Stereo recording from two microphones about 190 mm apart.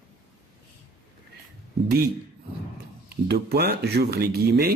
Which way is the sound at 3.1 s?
60° right (ahead or behind).